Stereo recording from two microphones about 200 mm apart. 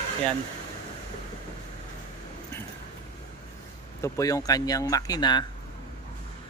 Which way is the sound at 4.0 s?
15° left (ahead or behind).